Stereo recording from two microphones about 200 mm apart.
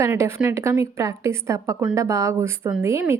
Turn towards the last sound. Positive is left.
turn(degrees=-15)  # may be behind; listen again after turning